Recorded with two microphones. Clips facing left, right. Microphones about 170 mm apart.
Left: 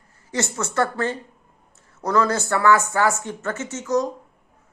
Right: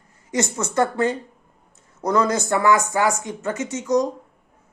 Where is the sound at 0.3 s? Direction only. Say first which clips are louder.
Right 2 dB; 20° right (ahead or behind).